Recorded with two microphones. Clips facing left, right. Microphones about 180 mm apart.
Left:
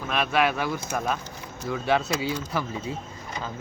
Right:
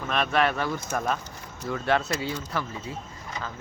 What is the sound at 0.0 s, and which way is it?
Speech, 5° left (ahead or behind).